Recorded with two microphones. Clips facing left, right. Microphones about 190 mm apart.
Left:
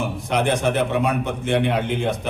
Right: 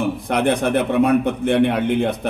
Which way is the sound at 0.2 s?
55° right (ahead or behind).